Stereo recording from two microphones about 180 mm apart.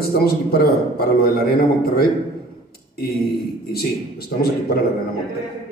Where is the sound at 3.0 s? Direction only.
60° left (ahead or behind).